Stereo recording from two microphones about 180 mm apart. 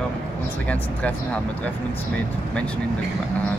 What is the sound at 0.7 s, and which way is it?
Speech, 10° left (ahead or behind).